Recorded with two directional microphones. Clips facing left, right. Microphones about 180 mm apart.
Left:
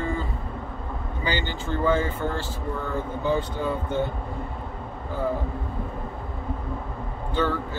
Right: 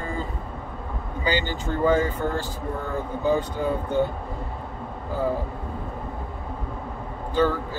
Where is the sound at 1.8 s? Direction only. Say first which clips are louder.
Right 2 dB; 15° right (ahead or behind).